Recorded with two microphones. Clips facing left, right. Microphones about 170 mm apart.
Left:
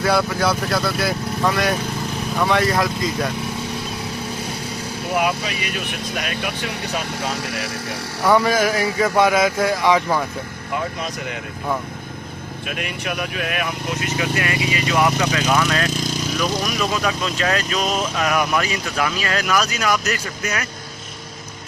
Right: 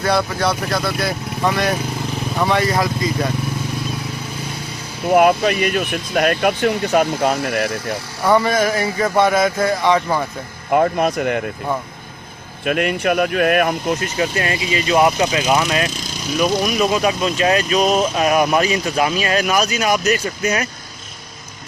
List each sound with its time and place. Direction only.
0.0 s speech: centre (ahead or behind)
5.1 s speech: 50° right (ahead or behind)
8.2 s speech: centre (ahead or behind)
10.7 s speech: 55° right (ahead or behind)
12.6 s speech: 55° right (ahead or behind); by 20.7 s 25° right (ahead or behind)